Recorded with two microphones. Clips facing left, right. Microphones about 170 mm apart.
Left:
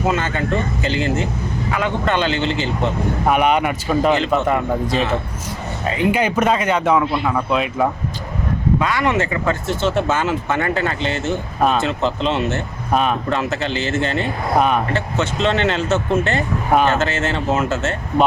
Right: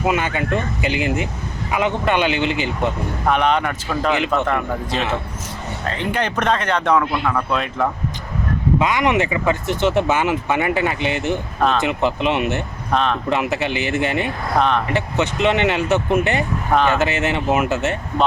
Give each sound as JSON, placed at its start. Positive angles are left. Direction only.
{"t": 0.0, "sound": "speech", "side_deg": -15}
{"t": 3.2, "sound": "speech", "side_deg": 10}
{"t": 8.8, "sound": "speech", "side_deg": -15}
{"t": 12.9, "sound": "speech", "side_deg": 10}
{"t": 13.3, "sound": "speech", "side_deg": -15}